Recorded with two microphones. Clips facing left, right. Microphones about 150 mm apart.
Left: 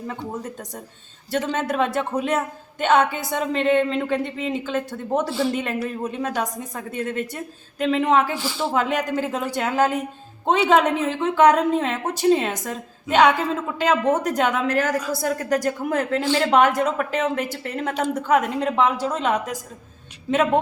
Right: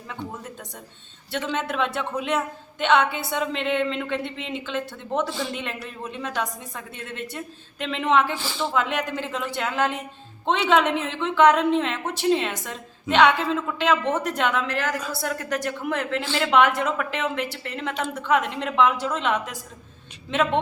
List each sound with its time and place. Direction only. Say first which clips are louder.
1.3 s a woman's voice: left 4 dB; 40° left (ahead or behind)
8.4 s a woman's voice: left 3 dB; 10° left (ahead or behind)
8.7 s a woman's voice: left 4 dB; 40° left (ahead or behind)